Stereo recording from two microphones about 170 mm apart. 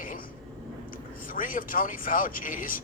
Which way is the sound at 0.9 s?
55° left (ahead or behind).